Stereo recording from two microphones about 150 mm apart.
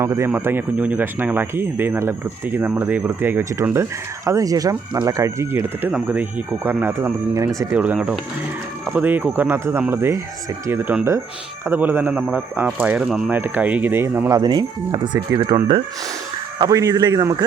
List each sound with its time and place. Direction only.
0.0 s a man's voice: 20° right (ahead or behind)
7.7 s a man's voice: 10° right (ahead or behind)